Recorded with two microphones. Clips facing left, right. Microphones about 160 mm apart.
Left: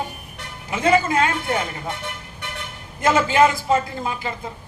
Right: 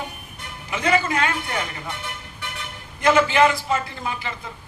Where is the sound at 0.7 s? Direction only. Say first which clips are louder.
Left 3 dB; 40° left (ahead or behind).